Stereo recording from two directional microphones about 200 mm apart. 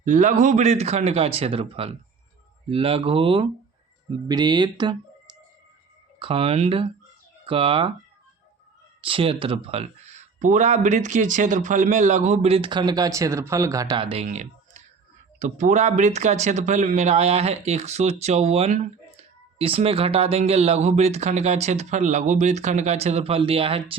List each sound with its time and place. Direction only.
0.0 s speech: 40° right (ahead or behind); by 4.9 s 20° right (ahead or behind)
6.1 s speech: 25° right (ahead or behind)
9.0 s speech: 25° right (ahead or behind)